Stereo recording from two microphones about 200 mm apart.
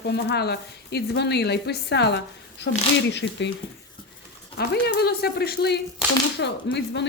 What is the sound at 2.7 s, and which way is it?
Speech, 70° left (ahead or behind).